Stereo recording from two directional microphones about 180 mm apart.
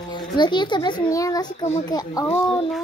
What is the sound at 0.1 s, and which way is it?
A child's voice, 25° left (ahead or behind).